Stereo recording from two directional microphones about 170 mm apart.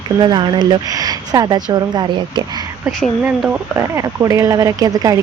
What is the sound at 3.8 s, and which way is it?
Speech, 20° right (ahead or behind).